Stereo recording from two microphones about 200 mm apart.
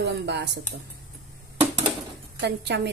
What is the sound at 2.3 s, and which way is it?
Speech, 60° right (ahead or behind).